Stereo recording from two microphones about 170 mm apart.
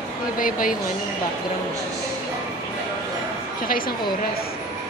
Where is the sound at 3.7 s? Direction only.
60° left (ahead or behind).